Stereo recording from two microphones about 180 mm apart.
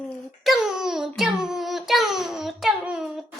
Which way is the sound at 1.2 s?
5° right (ahead or behind).